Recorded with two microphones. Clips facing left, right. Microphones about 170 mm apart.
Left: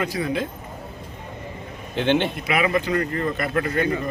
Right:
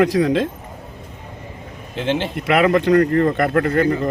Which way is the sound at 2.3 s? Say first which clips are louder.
Right 6 dB; 65° right (ahead or behind).